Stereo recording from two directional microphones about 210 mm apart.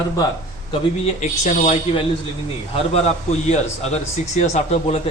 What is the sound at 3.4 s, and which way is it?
A man's voice, 35° left (ahead or behind).